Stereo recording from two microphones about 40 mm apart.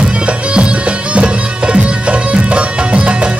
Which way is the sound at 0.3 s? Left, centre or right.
Right.